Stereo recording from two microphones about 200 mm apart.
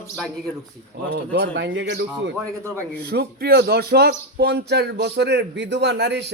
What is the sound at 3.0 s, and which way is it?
Speech, 50° right (ahead or behind).